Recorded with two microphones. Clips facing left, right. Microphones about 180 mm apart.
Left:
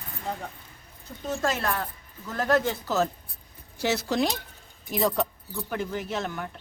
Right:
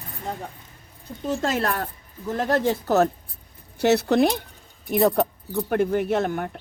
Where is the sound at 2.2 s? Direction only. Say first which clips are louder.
Right 5 dB; 25° right (ahead or behind).